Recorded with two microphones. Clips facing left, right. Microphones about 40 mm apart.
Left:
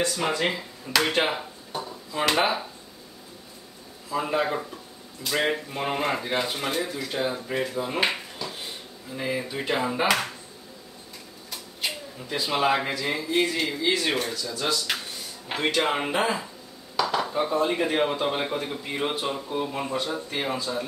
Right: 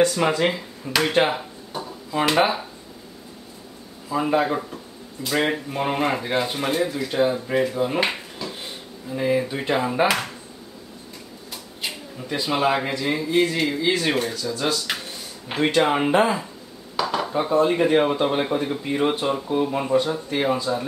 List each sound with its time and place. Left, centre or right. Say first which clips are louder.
0.0 s speech: right 6 dB; right
1.1 s chop: right 5 dB; centre
1.8 s speech: right 4 dB; centre
4.1 s speech: right 4 dB; centre
11.5 s speech: even; centre